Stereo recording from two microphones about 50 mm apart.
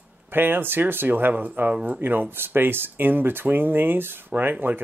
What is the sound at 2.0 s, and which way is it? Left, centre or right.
Speech, right.